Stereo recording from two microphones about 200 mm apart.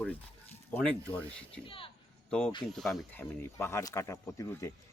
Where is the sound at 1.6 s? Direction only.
25° left (ahead or behind).